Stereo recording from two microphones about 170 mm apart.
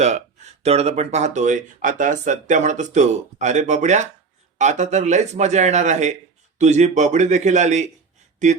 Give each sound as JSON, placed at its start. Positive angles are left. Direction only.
{"t": 0.0, "sound": "speech", "side_deg": -40}